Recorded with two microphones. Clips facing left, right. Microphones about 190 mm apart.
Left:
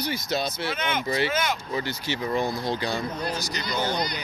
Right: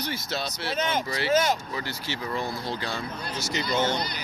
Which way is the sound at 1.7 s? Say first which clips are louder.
Left 4 dB; 20° left (ahead or behind).